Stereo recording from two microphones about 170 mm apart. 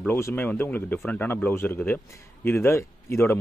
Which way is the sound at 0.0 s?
10° left (ahead or behind).